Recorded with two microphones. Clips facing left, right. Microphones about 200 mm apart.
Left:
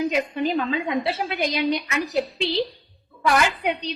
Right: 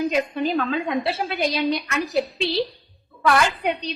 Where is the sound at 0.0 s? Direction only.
15° left (ahead or behind).